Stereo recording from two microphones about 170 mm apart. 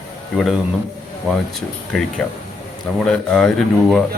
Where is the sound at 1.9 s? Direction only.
Centre (ahead or behind).